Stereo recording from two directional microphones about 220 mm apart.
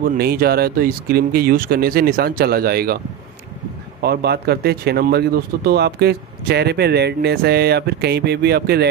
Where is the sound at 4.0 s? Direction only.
45° right (ahead or behind).